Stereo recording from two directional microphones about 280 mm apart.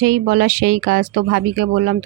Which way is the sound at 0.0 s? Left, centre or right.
Right.